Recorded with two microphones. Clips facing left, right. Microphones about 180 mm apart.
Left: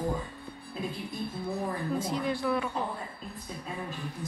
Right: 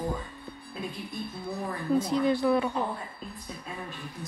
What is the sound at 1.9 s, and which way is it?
Speech, 20° right (ahead or behind).